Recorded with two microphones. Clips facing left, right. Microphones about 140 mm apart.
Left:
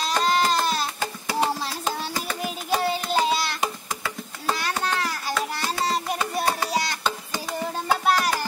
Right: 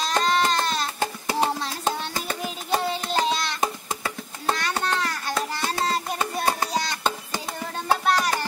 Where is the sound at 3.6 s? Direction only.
30° right (ahead or behind).